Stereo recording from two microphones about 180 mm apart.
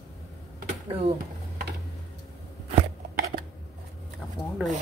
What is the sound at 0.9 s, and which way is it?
Speech, 30° right (ahead or behind).